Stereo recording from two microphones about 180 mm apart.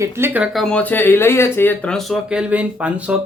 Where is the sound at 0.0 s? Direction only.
15° right (ahead or behind).